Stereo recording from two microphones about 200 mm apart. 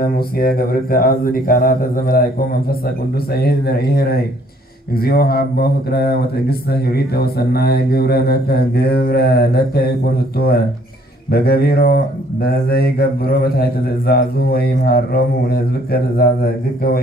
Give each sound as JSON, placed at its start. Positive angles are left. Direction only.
{"t": 0.0, "sound": "a man's voice", "side_deg": 50}
{"t": 3.3, "sound": "a man's voice", "side_deg": 50}
{"t": 11.3, "sound": "a man's voice", "side_deg": 50}